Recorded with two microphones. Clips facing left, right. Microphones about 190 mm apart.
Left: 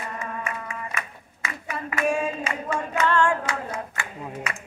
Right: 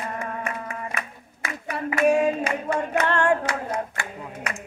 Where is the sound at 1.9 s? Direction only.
65° right (ahead or behind).